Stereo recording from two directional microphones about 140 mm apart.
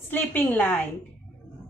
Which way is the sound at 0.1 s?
15° left (ahead or behind).